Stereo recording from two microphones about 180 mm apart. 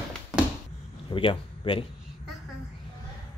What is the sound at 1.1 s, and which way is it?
Speech, 30° left (ahead or behind).